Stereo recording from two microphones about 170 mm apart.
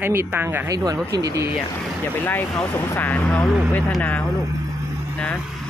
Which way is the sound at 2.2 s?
10° left (ahead or behind).